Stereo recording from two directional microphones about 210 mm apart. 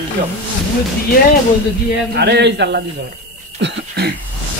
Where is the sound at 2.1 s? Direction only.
55° right (ahead or behind).